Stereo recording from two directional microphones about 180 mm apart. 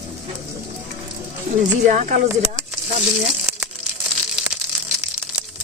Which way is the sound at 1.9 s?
40° right (ahead or behind).